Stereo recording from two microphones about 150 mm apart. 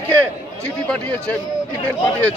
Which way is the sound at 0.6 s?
10° left (ahead or behind).